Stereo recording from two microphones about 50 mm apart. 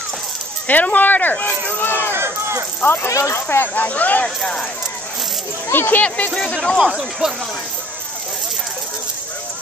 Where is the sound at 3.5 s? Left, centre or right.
Left.